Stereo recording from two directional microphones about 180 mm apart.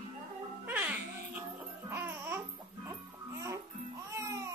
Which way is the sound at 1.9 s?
10° right (ahead or behind).